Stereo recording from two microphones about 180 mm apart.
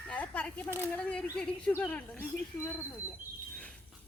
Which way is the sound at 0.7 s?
15° right (ahead or behind).